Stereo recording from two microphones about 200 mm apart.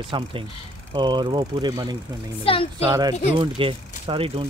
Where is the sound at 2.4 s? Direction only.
25° left (ahead or behind).